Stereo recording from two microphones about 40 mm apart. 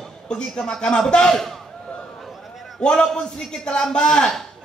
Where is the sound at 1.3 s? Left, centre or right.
Centre.